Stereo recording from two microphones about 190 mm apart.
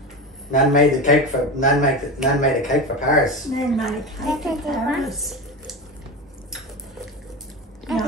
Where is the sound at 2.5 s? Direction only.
Centre (ahead or behind).